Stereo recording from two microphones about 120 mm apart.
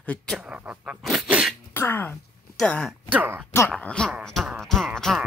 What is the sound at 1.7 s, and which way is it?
Speech, 15° left (ahead or behind).